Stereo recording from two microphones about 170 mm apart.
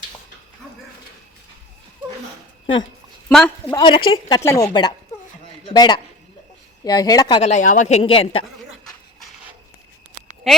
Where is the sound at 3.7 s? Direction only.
25° left (ahead or behind).